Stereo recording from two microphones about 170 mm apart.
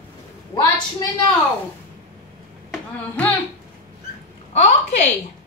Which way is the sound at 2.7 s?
10° left (ahead or behind).